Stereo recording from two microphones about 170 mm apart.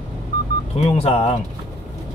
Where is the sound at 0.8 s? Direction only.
35° left (ahead or behind).